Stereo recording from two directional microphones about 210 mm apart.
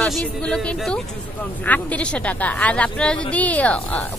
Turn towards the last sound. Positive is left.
turn(degrees=5)  # may be behind; listen again after turning